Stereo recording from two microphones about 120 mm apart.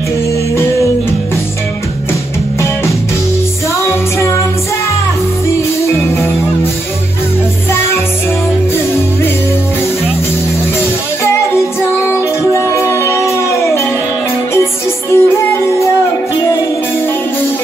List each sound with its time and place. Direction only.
11.2 s music: 20° left (ahead or behind)
12.7 s music: 25° left (ahead or behind)
15.0 s music: 20° left (ahead or behind)